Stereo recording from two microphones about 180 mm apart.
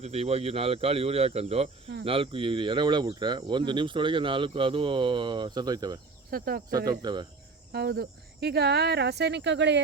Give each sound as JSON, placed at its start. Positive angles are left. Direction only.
{"t": 0.0, "sound": "speech", "side_deg": -35}
{"t": 6.3, "sound": "speech", "side_deg": -55}
{"t": 6.7, "sound": "speech", "side_deg": -20}
{"t": 7.7, "sound": "speech", "side_deg": -60}